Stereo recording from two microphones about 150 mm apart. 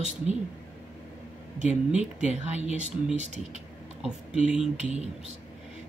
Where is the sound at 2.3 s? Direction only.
50° right (ahead or behind).